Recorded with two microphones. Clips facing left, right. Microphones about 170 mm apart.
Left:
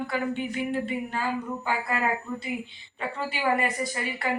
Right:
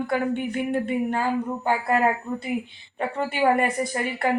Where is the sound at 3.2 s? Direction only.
55° right (ahead or behind).